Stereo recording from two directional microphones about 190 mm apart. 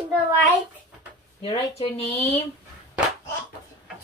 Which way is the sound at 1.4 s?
30° left (ahead or behind).